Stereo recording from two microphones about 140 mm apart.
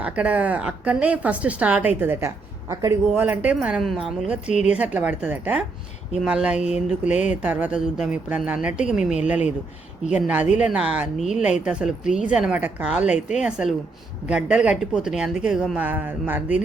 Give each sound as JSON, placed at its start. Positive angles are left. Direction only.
{"t": 0.0, "sound": "speech", "side_deg": -10}
{"t": 4.4, "sound": "a woman's voice", "side_deg": 55}
{"t": 4.8, "sound": "speech", "side_deg": -10}